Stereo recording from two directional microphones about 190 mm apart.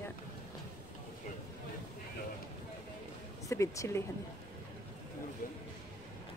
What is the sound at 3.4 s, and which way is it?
Speech, 15° left (ahead or behind).